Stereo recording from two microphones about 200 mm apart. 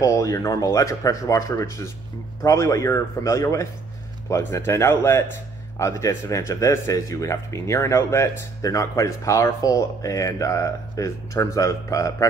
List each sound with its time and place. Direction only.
0.0 s speech: 15° left (ahead or behind)